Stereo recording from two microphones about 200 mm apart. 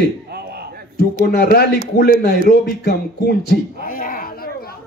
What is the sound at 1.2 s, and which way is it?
A man's voice, 50° left (ahead or behind).